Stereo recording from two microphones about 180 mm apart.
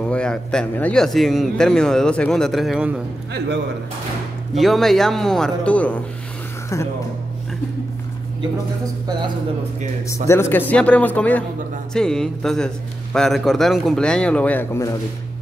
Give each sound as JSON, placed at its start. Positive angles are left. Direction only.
{"t": 0.0, "sound": "a man's voice", "side_deg": 5}
{"t": 3.3, "sound": "speech", "side_deg": -75}
{"t": 4.6, "sound": "a man's voice", "side_deg": 0}
{"t": 10.0, "sound": "a man's voice", "side_deg": 15}